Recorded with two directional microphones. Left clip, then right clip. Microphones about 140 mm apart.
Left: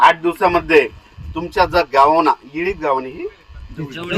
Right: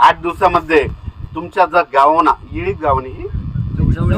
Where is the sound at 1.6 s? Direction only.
35° left (ahead or behind).